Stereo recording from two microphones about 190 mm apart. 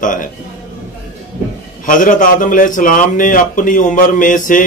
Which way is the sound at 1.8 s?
45° left (ahead or behind).